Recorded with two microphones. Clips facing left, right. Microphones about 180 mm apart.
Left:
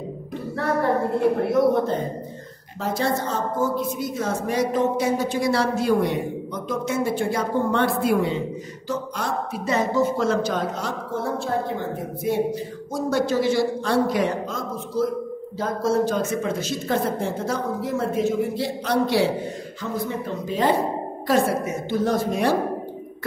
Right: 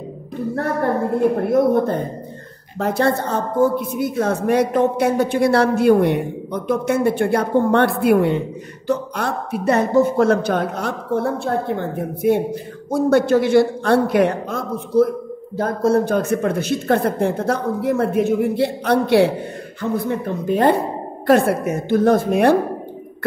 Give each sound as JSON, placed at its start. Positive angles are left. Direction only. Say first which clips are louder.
{"t": 1.4, "sound": "a woman's voice", "louder": "right 3 dB", "side_deg": -50}